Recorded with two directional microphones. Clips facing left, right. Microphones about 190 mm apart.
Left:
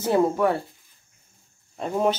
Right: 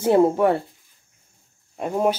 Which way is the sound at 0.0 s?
25° right (ahead or behind).